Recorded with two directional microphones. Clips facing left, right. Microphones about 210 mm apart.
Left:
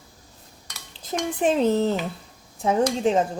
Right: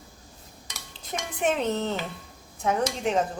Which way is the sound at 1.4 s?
30° left (ahead or behind).